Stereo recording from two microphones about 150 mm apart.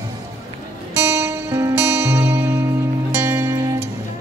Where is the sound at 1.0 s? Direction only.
20° right (ahead or behind).